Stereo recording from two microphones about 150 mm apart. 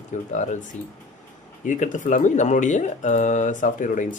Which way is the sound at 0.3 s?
55° left (ahead or behind).